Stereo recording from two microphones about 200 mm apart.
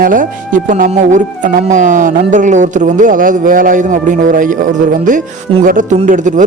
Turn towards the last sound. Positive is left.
turn(degrees=-40)  # may be behind; listen again after turning